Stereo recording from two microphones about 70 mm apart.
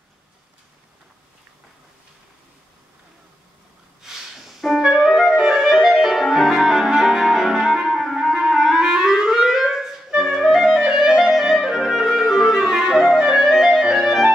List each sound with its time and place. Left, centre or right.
4.0 s clarinet: centre